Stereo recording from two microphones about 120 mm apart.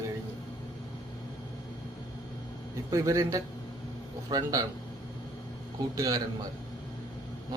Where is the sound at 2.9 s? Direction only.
30° right (ahead or behind).